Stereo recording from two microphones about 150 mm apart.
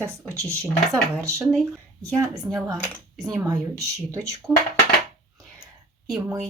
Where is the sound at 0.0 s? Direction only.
20° right (ahead or behind).